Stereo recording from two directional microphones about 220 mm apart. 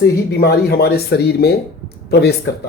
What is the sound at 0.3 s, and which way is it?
Speech, 45° left (ahead or behind).